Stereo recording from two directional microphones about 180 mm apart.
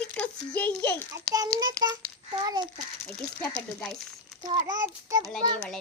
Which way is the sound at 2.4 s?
25° right (ahead or behind).